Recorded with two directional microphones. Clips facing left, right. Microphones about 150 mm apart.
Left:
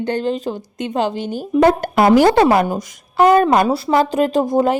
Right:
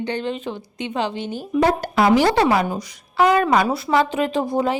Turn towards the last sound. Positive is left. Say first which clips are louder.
# left 5 dB
turn(degrees=45)  # may be behind; listen again after turning